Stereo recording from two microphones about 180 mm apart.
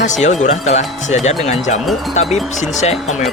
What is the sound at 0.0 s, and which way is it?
Speech, 40° left (ahead or behind).